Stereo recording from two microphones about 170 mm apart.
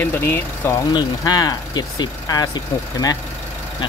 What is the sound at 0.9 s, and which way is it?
Speech, 25° left (ahead or behind).